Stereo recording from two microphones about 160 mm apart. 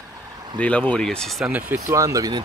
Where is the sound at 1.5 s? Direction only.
10° right (ahead or behind).